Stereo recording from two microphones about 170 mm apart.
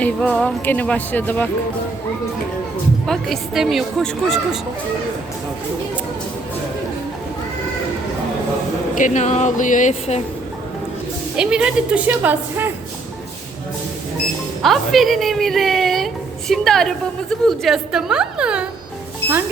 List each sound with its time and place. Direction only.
0.0 s speech: 5° left (ahead or behind)
3.1 s a woman's voice: centre (ahead or behind)
9.0 s speech: 45° left (ahead or behind)
11.3 s a woman's voice: 5° right (ahead or behind)
14.6 s a woman's voice: centre (ahead or behind)